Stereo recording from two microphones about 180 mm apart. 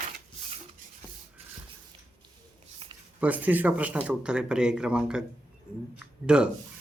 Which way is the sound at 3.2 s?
10° right (ahead or behind).